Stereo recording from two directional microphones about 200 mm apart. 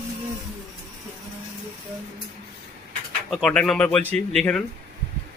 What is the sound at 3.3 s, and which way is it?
Speech, 5° left (ahead or behind).